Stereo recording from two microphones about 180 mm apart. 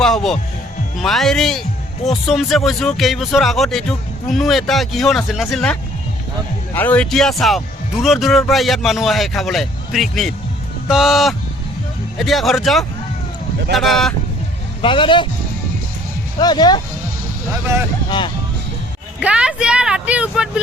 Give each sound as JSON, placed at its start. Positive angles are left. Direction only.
{"t": 0.0, "sound": "speech", "side_deg": 0}
{"t": 6.7, "sound": "speech", "side_deg": 10}
{"t": 14.8, "sound": "a man's voice", "side_deg": 30}
{"t": 16.4, "sound": "a man's voice", "side_deg": 25}
{"t": 19.2, "sound": "speech", "side_deg": -5}